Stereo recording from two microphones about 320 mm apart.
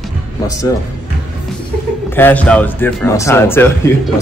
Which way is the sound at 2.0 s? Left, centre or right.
Centre.